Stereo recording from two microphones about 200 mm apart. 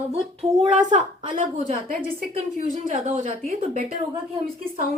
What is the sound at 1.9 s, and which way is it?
A woman's voice, 45° right (ahead or behind).